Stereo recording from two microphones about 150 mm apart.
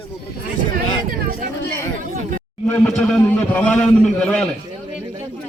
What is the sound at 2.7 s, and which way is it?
A man's voice, 5° left (ahead or behind).